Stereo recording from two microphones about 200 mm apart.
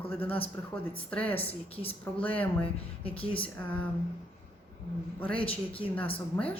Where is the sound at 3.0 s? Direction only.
30° left (ahead or behind).